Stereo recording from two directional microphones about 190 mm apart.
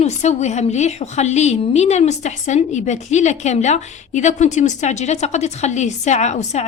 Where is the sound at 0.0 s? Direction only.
35° left (ahead or behind).